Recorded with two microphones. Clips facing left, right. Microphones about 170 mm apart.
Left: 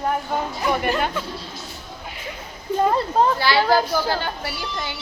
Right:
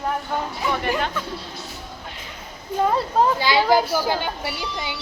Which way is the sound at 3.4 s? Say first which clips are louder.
Even; 15° right (ahead or behind).